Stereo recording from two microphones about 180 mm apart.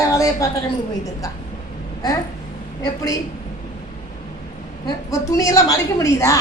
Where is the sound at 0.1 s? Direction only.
20° left (ahead or behind).